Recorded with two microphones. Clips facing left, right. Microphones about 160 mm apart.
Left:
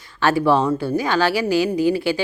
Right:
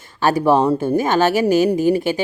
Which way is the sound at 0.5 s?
15° right (ahead or behind).